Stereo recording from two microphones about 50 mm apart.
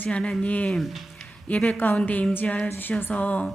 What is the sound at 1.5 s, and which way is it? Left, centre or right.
A woman's voice, left.